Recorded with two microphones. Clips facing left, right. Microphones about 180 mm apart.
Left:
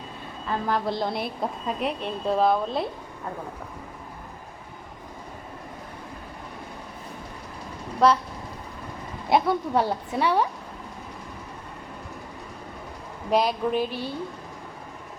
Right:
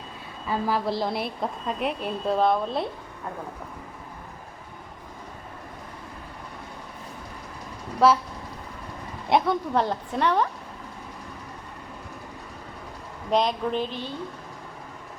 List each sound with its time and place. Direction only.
0.4 s a woman's voice: 5° right (ahead or behind)
7.9 s vehicle: 5° right (ahead or behind)
9.3 s a woman's voice: 5° left (ahead or behind)
13.3 s a woman's voice: 5° left (ahead or behind)